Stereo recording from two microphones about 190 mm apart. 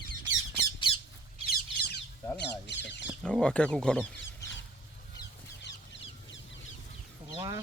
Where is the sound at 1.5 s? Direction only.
55° left (ahead or behind).